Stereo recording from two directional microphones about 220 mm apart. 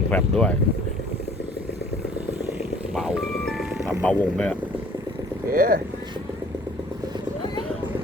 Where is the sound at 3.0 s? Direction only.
Centre (ahead or behind).